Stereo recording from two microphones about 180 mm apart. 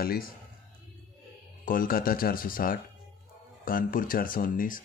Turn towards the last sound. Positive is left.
turn(degrees=50)  # may be behind; listen again after turning